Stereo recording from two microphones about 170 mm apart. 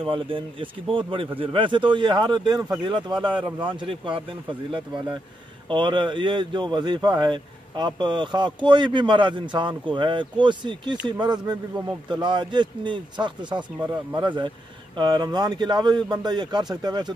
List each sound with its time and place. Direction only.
0.0 s speech: 30° right (ahead or behind)